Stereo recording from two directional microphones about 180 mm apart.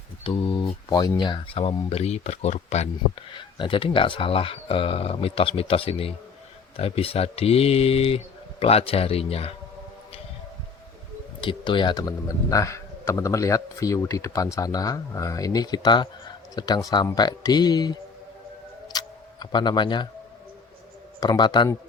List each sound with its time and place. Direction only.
0.3 s speech: 30° left (ahead or behind)
11.3 s speech: 25° left (ahead or behind)
18.9 s tick-tock: 25° left (ahead or behind)
21.2 s speech: 20° left (ahead or behind)